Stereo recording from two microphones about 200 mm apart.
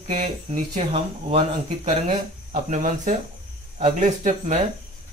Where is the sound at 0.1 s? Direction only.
30° right (ahead or behind).